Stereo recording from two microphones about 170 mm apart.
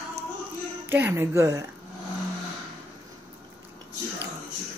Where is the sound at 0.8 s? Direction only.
15° right (ahead or behind).